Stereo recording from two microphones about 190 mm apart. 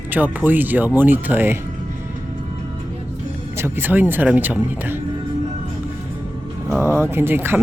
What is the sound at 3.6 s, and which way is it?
Speech, 15° right (ahead or behind).